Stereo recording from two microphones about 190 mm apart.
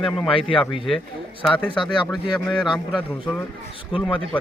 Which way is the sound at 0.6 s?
Centre (ahead or behind).